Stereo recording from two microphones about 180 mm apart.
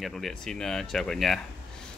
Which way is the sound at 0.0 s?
Centre (ahead or behind).